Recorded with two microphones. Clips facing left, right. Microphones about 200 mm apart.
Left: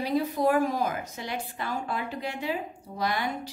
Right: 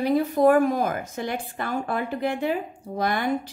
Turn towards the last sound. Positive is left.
turn(degrees=-50)  # may be behind; listen again after turning